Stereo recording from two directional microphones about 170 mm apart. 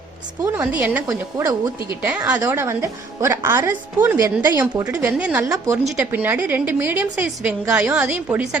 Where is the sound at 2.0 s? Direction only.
10° right (ahead or behind).